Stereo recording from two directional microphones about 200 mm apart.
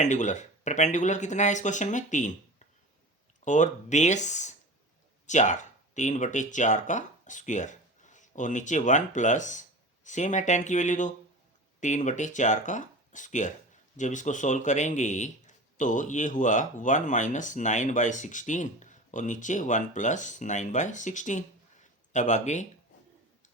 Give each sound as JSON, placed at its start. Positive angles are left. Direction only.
{"t": 0.0, "sound": "a man's voice", "side_deg": 35}
{"t": 3.4, "sound": "a man's voice", "side_deg": 35}